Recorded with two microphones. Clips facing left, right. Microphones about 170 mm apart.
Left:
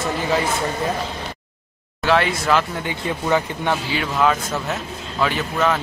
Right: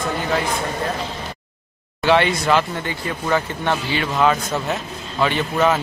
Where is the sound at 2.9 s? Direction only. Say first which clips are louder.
Left 1 dB; 15° left (ahead or behind).